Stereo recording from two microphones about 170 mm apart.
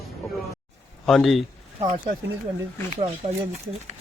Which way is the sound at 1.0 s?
Centre (ahead or behind).